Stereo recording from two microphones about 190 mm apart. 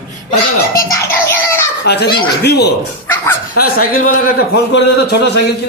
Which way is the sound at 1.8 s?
60° left (ahead or behind).